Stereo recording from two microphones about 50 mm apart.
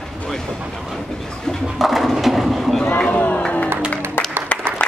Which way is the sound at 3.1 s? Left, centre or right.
Left.